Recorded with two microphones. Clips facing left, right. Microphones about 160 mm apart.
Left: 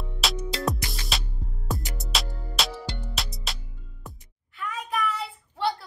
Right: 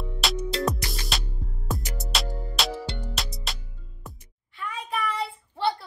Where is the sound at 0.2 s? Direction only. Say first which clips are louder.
Right 2 dB; centre (ahead or behind).